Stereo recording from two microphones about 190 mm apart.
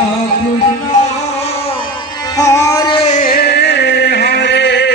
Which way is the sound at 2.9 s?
35° left (ahead or behind).